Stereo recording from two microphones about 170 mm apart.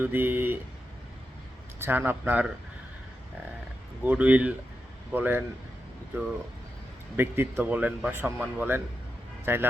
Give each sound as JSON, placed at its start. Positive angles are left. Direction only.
{"t": 0.0, "sound": "speech", "side_deg": -10}
{"t": 1.8, "sound": "speech", "side_deg": -10}
{"t": 4.0, "sound": "speech", "side_deg": -10}
{"t": 7.2, "sound": "speech", "side_deg": -15}